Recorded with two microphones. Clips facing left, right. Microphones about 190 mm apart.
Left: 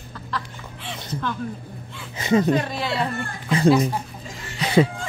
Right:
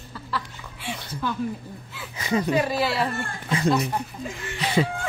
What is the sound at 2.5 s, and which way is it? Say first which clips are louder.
Speech: even; 5° right (ahead or behind).